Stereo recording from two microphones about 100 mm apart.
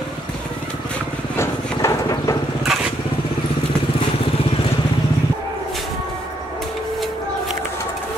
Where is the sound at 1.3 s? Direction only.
30° left (ahead or behind).